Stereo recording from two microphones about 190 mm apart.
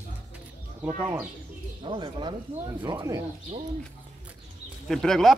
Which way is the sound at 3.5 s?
40° right (ahead or behind).